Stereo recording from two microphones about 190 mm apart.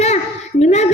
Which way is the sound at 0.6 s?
35° left (ahead or behind).